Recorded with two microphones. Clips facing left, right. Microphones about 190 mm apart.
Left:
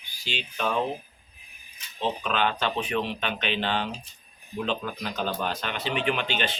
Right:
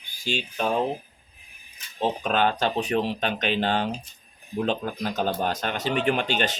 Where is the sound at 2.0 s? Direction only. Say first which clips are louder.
Right 3 dB; 45° right (ahead or behind).